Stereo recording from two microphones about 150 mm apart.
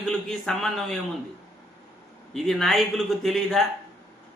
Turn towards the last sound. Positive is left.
turn(degrees=0)  # may be behind; listen again after turning